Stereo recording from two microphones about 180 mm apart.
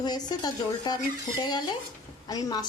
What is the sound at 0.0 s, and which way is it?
A woman's voice, 20° left (ahead or behind).